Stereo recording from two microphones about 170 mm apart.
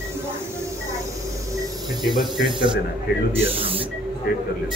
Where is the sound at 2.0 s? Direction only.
Centre (ahead or behind).